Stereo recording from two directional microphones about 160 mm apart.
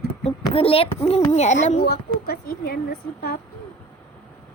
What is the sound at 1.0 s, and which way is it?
Speech, 40° left (ahead or behind).